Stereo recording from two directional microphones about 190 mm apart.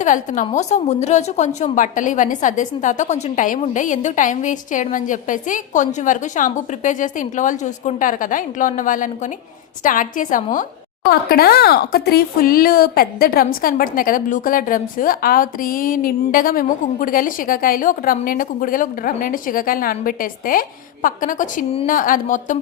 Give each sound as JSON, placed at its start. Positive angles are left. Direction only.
{"t": 0.0, "sound": "a woman's voice", "side_deg": 40}
{"t": 11.1, "sound": "speech", "side_deg": 55}